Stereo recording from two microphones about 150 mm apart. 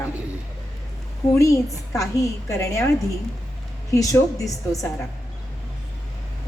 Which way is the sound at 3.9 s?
20° left (ahead or behind).